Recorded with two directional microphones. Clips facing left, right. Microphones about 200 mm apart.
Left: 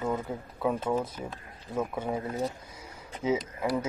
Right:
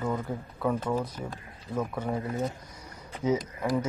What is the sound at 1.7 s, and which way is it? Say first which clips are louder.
Speech: even; 5° left (ahead or behind).